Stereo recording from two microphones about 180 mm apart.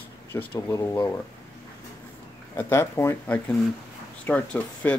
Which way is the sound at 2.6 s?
15° left (ahead or behind).